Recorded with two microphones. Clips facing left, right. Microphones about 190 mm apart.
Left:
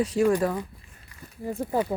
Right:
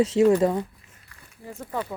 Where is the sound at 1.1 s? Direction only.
15° left (ahead or behind).